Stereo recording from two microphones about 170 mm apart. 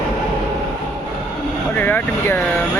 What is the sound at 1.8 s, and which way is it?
Speech, 10° left (ahead or behind).